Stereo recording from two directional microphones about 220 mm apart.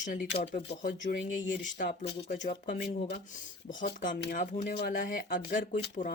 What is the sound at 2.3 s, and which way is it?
Speech, 50° left (ahead or behind).